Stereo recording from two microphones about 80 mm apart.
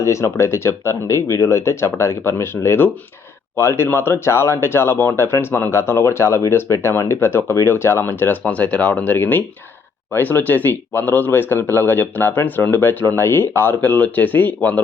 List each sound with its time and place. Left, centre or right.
0.0 s speech: left; by 14.8 s centre